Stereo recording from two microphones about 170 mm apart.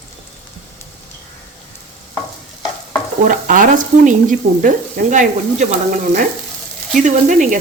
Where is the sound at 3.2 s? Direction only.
55° right (ahead or behind).